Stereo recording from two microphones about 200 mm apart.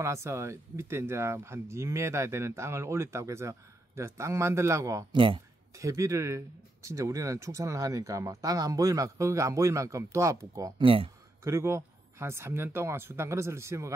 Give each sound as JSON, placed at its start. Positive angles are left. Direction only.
{"t": 0.0, "sound": "speech", "side_deg": -15}
{"t": 11.4, "sound": "speech", "side_deg": -15}